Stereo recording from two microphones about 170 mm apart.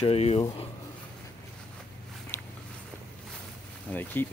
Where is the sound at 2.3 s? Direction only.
15° left (ahead or behind).